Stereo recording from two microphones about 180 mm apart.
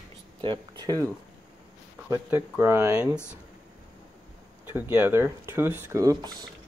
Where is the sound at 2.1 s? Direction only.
15° right (ahead or behind).